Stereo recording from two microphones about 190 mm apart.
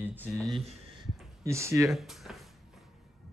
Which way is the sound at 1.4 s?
15° right (ahead or behind).